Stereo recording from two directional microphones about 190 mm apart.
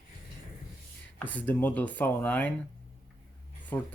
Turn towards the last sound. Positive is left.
turn(degrees=10)  # may be behind; listen again after turning